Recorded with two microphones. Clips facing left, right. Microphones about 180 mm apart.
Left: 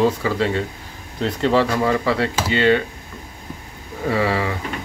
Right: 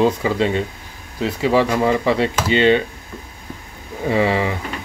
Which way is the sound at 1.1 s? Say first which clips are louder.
Right 1 dB; 5° right (ahead or behind).